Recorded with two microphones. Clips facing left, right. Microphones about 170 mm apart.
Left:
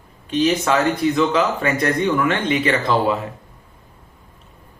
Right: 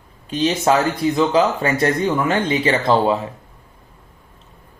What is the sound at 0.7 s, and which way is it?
Speech, 35° right (ahead or behind).